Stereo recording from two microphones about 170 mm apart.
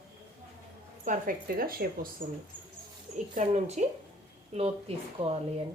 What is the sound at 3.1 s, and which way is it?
Speech, 45° right (ahead or behind).